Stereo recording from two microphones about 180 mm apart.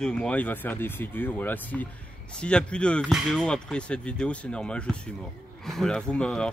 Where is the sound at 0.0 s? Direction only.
5° left (ahead or behind).